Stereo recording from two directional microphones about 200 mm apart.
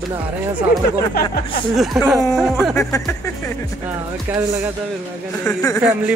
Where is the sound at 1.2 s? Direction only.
50° left (ahead or behind).